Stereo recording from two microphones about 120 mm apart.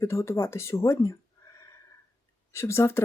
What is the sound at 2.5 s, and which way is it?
Speech, 20° left (ahead or behind).